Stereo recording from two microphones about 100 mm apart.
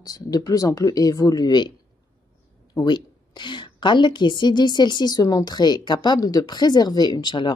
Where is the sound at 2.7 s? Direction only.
45° left (ahead or behind).